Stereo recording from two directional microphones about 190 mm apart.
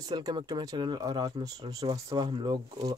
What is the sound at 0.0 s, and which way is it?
Speech, 20° right (ahead or behind).